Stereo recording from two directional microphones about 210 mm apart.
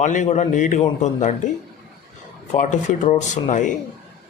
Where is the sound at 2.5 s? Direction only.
35° left (ahead or behind).